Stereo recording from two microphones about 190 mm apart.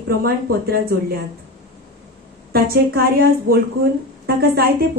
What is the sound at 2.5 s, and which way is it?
A woman's voice, 50° right (ahead or behind).